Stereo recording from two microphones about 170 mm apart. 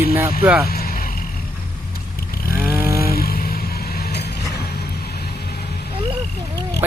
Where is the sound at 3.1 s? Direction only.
65° left (ahead or behind).